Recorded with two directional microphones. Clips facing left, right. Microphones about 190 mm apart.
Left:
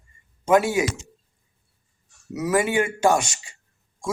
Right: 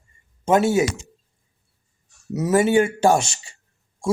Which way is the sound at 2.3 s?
25° right (ahead or behind).